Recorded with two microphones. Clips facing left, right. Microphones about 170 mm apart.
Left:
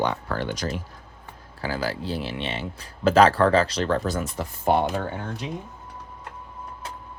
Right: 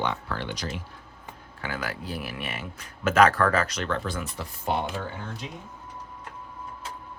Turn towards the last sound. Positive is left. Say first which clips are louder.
# left 5 dB
turn(degrees=55)  # may be behind; listen again after turning